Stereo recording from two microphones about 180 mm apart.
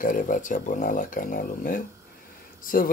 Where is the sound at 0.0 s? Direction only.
45° left (ahead or behind).